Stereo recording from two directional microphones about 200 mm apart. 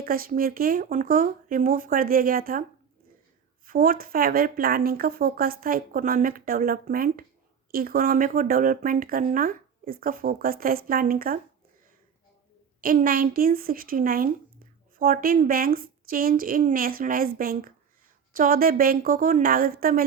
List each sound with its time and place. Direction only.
0.0 s speech: 45° right (ahead or behind)
3.7 s speech: 45° right (ahead or behind)
12.8 s speech: 45° right (ahead or behind)